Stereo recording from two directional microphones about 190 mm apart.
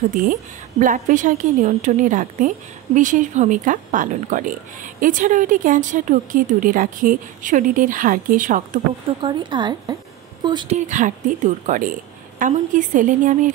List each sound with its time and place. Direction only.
0.1 s a woman's voice: 45° right (ahead or behind)
9.2 s speech: 25° right (ahead or behind)
10.8 s a woman's voice: 40° right (ahead or behind)